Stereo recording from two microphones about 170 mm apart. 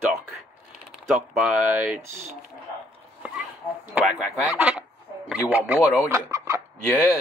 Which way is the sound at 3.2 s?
10° right (ahead or behind).